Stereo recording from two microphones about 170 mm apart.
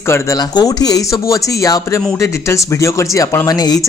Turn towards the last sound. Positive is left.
turn(degrees=20)  # may be behind; listen again after turning